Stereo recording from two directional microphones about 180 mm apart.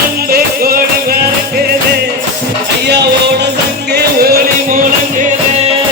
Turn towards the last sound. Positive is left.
turn(degrees=-55)  # may be behind; listen again after turning